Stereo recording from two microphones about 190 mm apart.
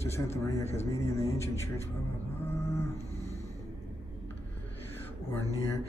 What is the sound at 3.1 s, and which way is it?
Music, 35° left (ahead or behind).